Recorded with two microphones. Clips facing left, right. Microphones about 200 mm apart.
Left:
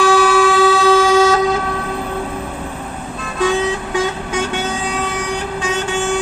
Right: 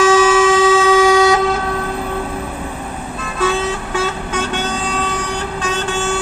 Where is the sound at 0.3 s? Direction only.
20° right (ahead or behind).